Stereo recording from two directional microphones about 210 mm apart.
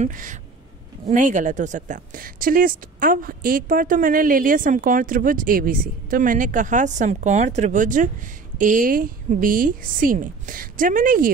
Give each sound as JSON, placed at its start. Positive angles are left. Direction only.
{"t": 0.0, "sound": "speech", "side_deg": -40}